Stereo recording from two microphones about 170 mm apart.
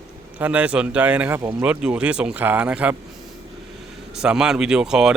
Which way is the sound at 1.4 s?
20° right (ahead or behind).